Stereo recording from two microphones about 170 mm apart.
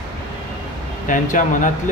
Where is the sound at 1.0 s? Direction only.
50° left (ahead or behind).